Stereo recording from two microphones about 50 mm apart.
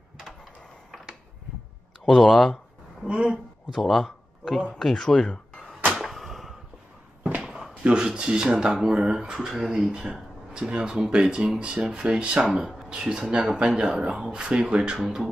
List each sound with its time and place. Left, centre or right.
2.0 s speech: centre
3.1 s speech: centre
3.7 s speech: centre
5.3 s a sound: centre
5.9 s a sound: centre
7.7 s speech: right
12.4 s speech: centre